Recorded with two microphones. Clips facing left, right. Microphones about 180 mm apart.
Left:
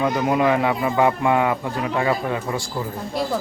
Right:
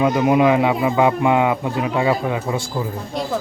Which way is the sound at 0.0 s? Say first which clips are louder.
Right 4 dB; 20° right (ahead or behind).